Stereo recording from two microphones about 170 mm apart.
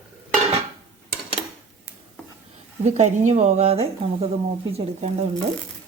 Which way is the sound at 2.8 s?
45° right (ahead or behind).